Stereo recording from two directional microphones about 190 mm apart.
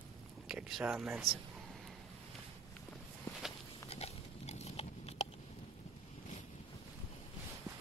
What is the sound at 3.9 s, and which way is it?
Pig, 35° left (ahead or behind).